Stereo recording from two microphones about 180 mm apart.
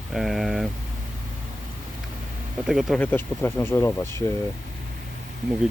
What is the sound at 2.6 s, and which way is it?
Speech, centre (ahead or behind).